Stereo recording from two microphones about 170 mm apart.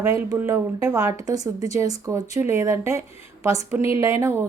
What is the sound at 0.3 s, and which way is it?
A woman's voice, 15° right (ahead or behind).